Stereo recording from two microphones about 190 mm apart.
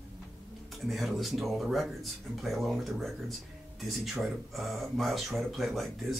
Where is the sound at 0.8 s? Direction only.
Centre (ahead or behind).